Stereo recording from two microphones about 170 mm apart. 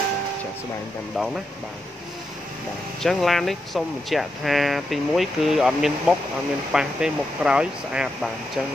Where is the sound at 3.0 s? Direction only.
Centre (ahead or behind).